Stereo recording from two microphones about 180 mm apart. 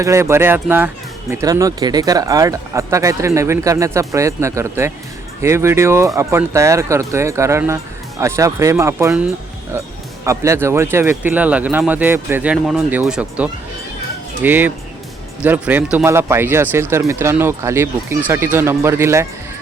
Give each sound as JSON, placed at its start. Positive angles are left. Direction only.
{"t": 0.0, "sound": "speech", "side_deg": -15}
{"t": 10.2, "sound": "speech", "side_deg": -15}